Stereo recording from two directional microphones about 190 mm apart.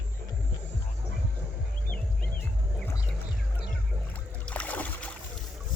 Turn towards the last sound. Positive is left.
turn(degrees=10)  # may be behind; listen again after turning